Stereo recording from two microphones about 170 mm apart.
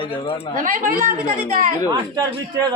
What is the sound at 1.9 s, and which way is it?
Speech, 25° right (ahead or behind).